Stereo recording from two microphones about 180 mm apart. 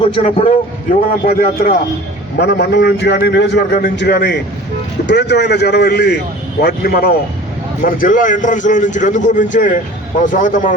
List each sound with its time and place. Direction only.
0.2 s a man's voice: 45° left (ahead or behind)
2.4 s a man's voice: 70° left (ahead or behind); by 10.8 s 45° left (ahead or behind)